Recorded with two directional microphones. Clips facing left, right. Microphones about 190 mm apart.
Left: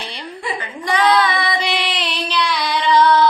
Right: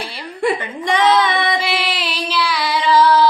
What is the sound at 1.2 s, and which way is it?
Music, 20° right (ahead or behind).